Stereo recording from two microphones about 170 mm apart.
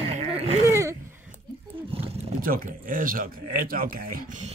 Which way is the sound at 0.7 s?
15° right (ahead or behind).